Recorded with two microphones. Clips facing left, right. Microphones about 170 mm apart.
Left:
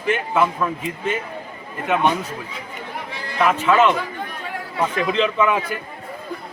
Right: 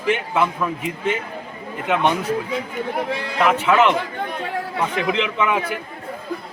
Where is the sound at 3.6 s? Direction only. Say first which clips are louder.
Even; 15° right (ahead or behind).